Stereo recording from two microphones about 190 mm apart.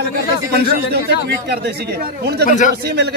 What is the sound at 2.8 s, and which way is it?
Speech, 60° right (ahead or behind).